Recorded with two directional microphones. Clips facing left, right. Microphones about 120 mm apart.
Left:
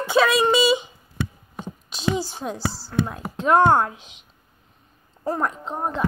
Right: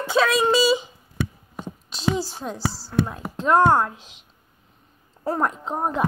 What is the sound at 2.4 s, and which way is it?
Speech, 5° left (ahead or behind).